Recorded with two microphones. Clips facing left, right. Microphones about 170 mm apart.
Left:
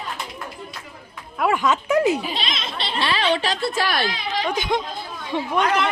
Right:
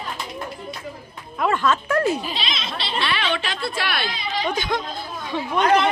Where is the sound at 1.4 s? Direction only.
10° left (ahead or behind).